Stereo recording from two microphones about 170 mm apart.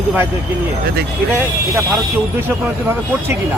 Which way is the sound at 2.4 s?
15° right (ahead or behind).